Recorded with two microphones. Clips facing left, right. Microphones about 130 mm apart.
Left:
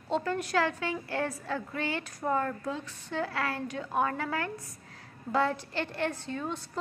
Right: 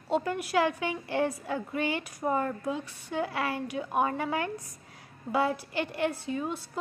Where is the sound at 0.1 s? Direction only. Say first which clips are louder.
Right 1 dB; 10° right (ahead or behind).